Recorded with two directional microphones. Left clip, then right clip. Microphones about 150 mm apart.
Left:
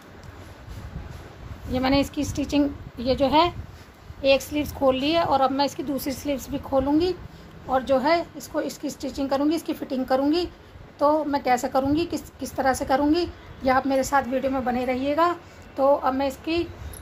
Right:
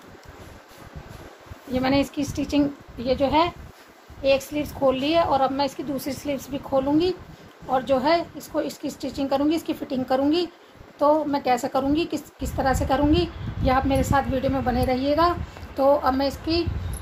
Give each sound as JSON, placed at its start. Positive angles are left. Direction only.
{"t": 1.7, "sound": "a woman's voice", "side_deg": 35}